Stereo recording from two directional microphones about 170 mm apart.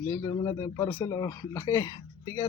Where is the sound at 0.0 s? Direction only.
20° left (ahead or behind).